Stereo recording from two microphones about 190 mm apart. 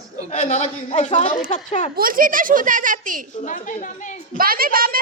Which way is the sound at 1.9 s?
50° right (ahead or behind).